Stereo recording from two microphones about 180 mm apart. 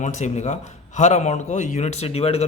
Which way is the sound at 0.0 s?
40° left (ahead or behind).